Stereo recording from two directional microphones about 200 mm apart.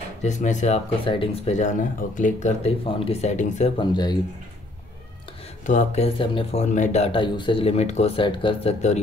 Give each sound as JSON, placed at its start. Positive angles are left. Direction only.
{"t": 0.2, "sound": "speech", "side_deg": 35}
{"t": 5.7, "sound": "speech", "side_deg": 35}